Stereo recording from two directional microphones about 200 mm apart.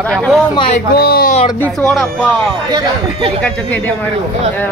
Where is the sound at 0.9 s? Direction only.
50° left (ahead or behind).